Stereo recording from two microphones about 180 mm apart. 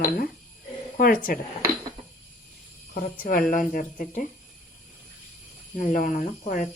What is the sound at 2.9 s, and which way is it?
Speech, 50° left (ahead or behind).